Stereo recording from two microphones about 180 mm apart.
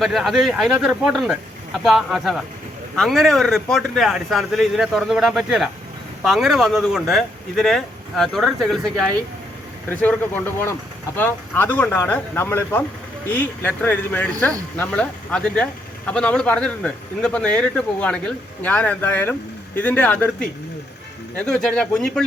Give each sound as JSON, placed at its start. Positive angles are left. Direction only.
{"t": 0.0, "sound": "speech", "side_deg": 0}